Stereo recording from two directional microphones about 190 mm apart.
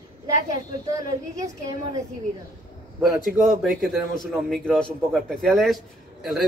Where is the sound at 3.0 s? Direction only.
Centre (ahead or behind).